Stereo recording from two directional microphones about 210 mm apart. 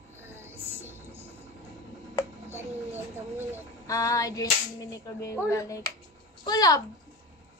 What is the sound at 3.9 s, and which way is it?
Female singing, 15° left (ahead or behind).